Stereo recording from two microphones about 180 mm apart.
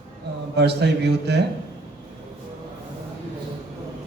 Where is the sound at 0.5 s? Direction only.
65° right (ahead or behind).